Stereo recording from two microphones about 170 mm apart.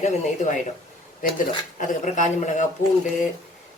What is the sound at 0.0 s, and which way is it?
Speech, 45° left (ahead or behind).